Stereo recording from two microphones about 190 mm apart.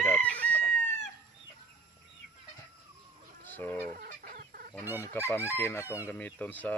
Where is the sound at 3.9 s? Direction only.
50° right (ahead or behind).